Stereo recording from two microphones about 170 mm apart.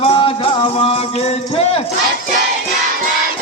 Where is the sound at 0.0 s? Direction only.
30° left (ahead or behind).